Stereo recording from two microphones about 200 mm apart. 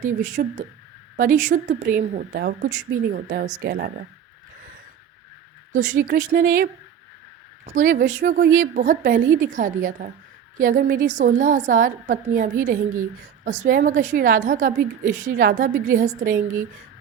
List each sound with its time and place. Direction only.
0.0 s a woman's voice: 40° right (ahead or behind)
5.7 s a woman's voice: 40° right (ahead or behind)